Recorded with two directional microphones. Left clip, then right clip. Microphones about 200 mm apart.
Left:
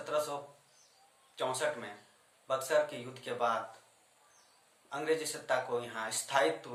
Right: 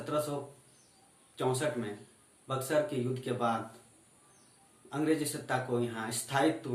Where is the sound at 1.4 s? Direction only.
10° left (ahead or behind).